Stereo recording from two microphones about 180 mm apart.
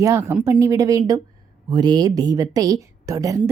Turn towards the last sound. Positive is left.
turn(degrees=-20)  # may be behind; listen again after turning